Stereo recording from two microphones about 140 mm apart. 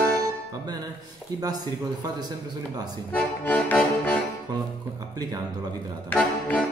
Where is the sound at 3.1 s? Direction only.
10° left (ahead or behind).